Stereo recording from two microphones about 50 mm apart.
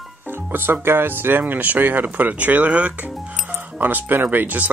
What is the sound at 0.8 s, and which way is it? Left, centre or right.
Speech, right.